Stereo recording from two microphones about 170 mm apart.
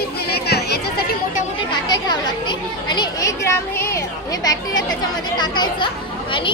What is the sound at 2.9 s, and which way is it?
Speech, 20° left (ahead or behind).